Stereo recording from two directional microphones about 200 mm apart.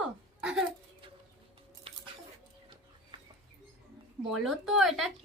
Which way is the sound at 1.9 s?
25° right (ahead or behind).